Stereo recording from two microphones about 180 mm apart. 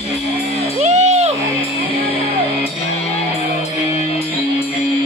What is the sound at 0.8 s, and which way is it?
Music, 40° right (ahead or behind).